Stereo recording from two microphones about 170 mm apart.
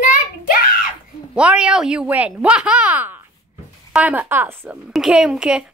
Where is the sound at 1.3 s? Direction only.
5° right (ahead or behind).